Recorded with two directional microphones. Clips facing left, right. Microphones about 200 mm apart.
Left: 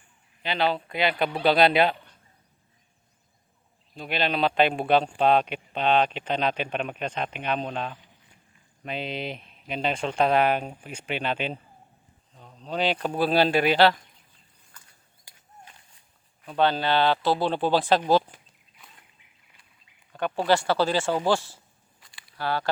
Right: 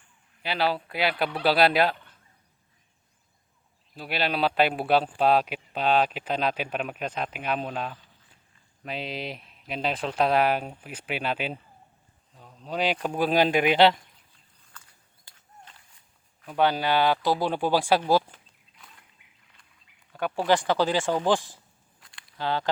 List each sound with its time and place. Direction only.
0.4 s speech: 5° right (ahead or behind)
3.9 s speech: 5° right (ahead or behind)
15.2 s a sound: 15° left (ahead or behind)
16.5 s speech: 10° right (ahead or behind)
20.5 s speech: 15° right (ahead or behind)
22.0 s walk: centre (ahead or behind)
22.4 s speech: 20° right (ahead or behind)